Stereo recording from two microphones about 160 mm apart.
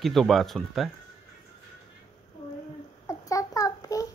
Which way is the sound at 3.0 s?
20° left (ahead or behind).